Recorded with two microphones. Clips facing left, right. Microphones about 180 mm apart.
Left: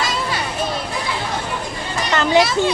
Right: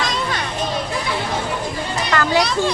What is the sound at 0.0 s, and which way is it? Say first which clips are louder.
Children playing: even; 5° left (ahead or behind).